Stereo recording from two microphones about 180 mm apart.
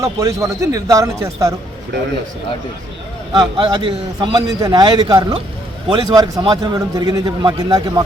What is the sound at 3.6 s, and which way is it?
A man's voice, 30° right (ahead or behind).